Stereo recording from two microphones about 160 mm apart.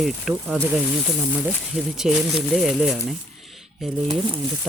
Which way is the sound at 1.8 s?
5° right (ahead or behind).